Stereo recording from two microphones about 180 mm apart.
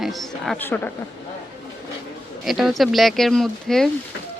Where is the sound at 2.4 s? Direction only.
Centre (ahead or behind).